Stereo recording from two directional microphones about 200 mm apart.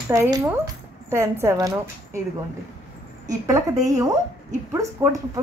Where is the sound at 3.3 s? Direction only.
15° right (ahead or behind).